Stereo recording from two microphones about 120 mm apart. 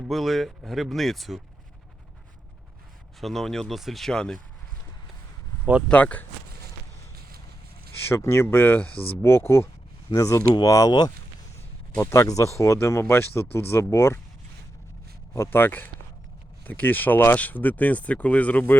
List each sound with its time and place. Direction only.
0.0 s speech: centre (ahead or behind)
3.2 s speech: centre (ahead or behind)
5.9 s speech: 10° left (ahead or behind)
8.0 s speech: 20° left (ahead or behind)
15.4 s speech: 20° left (ahead or behind)